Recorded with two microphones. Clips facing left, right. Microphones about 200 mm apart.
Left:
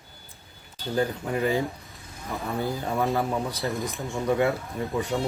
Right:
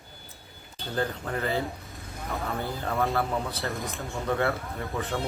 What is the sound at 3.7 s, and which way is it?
Speech, centre (ahead or behind).